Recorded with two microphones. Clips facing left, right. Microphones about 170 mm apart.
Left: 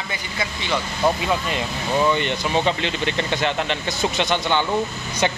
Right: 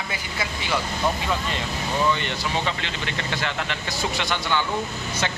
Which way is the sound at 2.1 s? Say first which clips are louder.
Left 5 dB; 20° left (ahead or behind).